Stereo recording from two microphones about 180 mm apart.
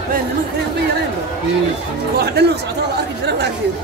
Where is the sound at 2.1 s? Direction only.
65° right (ahead or behind).